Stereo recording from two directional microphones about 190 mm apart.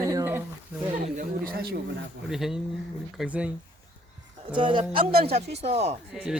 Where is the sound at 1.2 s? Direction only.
50° right (ahead or behind).